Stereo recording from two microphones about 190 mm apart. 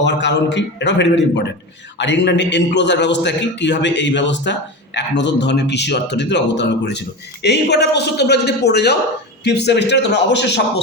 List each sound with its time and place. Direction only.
0.0 s a man's voice: 65° left (ahead or behind)